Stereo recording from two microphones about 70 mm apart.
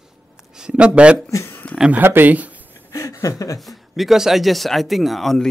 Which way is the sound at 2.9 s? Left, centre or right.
Left.